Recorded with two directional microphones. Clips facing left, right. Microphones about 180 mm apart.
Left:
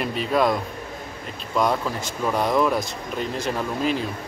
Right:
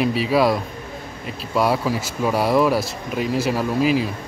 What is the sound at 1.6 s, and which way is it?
Speech, 5° right (ahead or behind).